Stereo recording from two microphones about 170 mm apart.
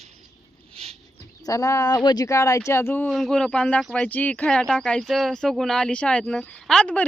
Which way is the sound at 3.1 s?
Centre (ahead or behind).